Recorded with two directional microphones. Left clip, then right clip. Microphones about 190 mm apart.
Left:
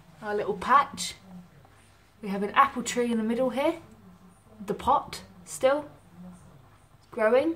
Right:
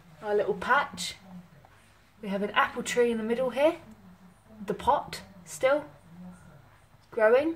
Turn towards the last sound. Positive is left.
turn(degrees=-5)  # may be behind; listen again after turning